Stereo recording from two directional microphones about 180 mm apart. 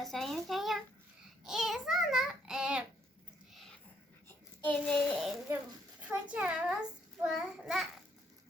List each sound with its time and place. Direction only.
0.0 s a sound: centre (ahead or behind)
1.5 s child singing: centre (ahead or behind)
3.5 s whispering: centre (ahead or behind)
4.3 s a child's voice: 10° left (ahead or behind)